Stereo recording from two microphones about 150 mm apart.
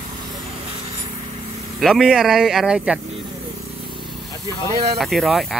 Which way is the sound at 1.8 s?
Centre (ahead or behind).